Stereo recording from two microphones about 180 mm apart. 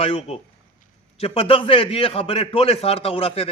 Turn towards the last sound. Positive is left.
turn(degrees=30)  # may be behind; listen again after turning